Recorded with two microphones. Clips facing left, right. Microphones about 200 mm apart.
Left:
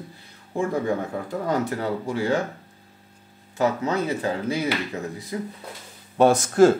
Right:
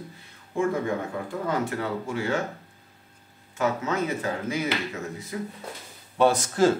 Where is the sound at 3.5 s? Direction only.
35° left (ahead or behind).